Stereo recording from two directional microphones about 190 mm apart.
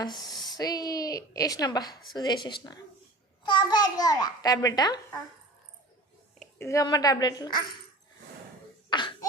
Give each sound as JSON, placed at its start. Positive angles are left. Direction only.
{"t": 0.4, "sound": "a child's voice", "side_deg": 20}
{"t": 6.6, "sound": "a child's voice", "side_deg": 15}
{"t": 8.9, "sound": "cough", "side_deg": 25}